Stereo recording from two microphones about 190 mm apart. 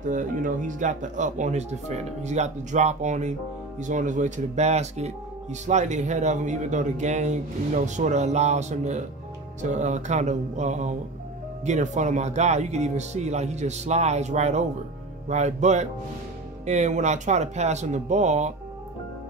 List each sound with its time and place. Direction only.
0.1 s speech: 45° right (ahead or behind)